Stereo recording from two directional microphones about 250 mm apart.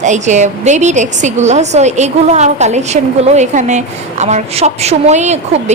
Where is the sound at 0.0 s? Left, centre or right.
Right.